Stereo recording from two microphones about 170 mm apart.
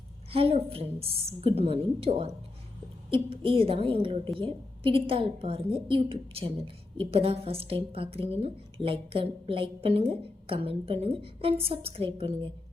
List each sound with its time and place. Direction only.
0.3 s a woman's voice: 35° right (ahead or behind)